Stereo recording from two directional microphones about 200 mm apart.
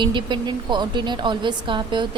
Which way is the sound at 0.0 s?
25° right (ahead or behind).